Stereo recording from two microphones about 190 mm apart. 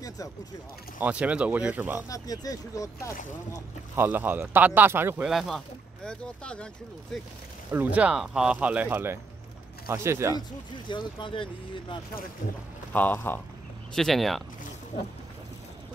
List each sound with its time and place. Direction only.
1.0 s speech: 5° right (ahead or behind)
2.0 s speech: 20° left (ahead or behind)
3.9 s speech: 10° right (ahead or behind); by 7.2 s 5° left (ahead or behind)
7.7 s speech: 10° right (ahead or behind)
10.9 s speech: 25° left (ahead or behind)
12.9 s speech: 10° left (ahead or behind)